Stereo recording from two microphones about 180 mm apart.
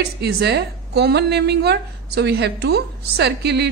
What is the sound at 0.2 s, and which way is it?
A woman's voice, 65° right (ahead or behind).